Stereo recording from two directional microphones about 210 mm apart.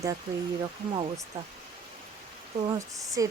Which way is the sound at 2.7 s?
15° right (ahead or behind).